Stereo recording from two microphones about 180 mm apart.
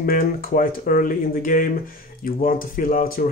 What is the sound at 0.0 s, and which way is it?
Speech, 55° left (ahead or behind).